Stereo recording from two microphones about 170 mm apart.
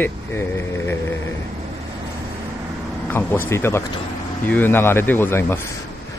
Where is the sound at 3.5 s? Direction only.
15° left (ahead or behind).